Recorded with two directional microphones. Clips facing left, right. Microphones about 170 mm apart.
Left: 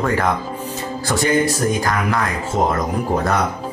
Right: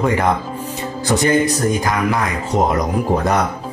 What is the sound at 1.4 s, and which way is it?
Speech, 20° right (ahead or behind).